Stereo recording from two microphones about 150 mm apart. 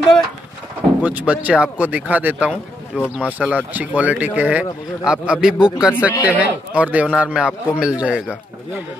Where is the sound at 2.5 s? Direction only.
10° left (ahead or behind).